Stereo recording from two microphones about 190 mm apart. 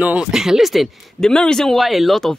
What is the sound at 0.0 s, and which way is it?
Speech, 5° right (ahead or behind).